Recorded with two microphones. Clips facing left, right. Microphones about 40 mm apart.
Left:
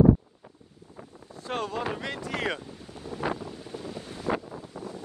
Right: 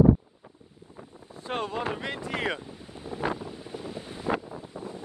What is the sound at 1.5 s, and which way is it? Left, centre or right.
Speech, right.